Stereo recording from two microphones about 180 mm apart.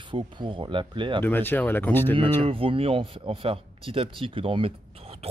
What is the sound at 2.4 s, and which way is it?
Speech, 30° right (ahead or behind).